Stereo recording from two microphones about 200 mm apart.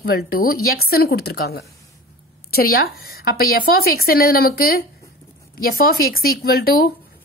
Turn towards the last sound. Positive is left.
turn(degrees=50)  # may be behind; listen again after turning